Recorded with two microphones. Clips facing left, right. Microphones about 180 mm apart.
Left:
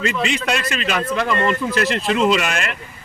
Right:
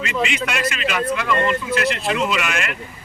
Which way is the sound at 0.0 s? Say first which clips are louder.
Left 2 dB; 35° left (ahead or behind).